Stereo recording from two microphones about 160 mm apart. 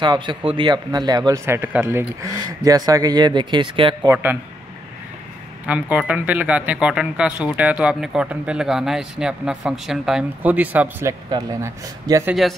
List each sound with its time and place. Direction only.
0.0 s speech: 30° right (ahead or behind)
4.1 s speech: 15° right (ahead or behind)
5.7 s speech: 10° right (ahead or behind)